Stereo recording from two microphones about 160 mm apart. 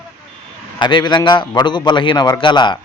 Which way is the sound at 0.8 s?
30° left (ahead or behind).